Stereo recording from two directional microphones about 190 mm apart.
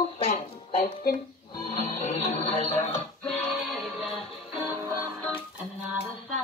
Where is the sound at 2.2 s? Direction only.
30° left (ahead or behind).